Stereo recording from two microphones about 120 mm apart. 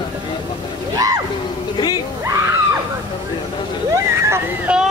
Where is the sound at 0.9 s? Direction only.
30° right (ahead or behind).